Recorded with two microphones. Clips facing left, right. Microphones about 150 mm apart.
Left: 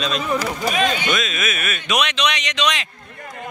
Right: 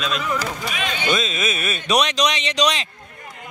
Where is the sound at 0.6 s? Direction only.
40° left (ahead or behind).